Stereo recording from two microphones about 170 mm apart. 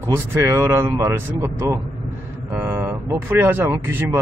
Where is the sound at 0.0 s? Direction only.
15° right (ahead or behind).